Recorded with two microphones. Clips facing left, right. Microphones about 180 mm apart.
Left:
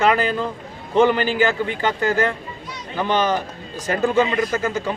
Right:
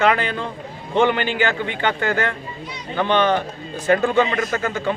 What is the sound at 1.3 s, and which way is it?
Speech, 40° left (ahead or behind).